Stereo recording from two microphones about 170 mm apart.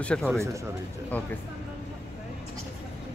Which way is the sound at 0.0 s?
5° left (ahead or behind).